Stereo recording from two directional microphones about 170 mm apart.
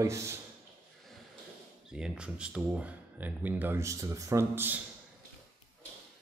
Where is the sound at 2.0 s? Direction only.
5° right (ahead or behind).